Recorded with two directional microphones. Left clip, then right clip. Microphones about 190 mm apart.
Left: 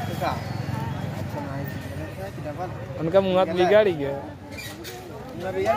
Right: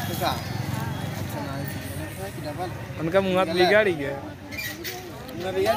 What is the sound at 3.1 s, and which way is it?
Speech, 10° left (ahead or behind).